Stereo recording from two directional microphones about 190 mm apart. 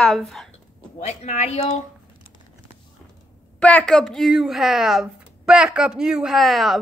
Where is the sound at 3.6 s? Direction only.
5° left (ahead or behind).